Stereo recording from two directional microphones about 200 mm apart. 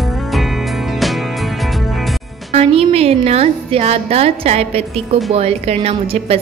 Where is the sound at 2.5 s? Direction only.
30° right (ahead or behind).